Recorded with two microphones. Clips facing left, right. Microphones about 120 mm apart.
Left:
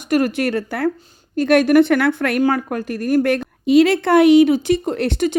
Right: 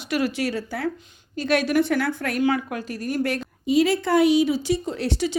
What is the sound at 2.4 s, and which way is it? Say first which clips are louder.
A woman's voice: left 4 dB; 45° left (ahead or behind).